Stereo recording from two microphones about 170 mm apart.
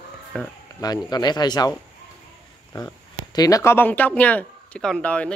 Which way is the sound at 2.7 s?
20° left (ahead or behind).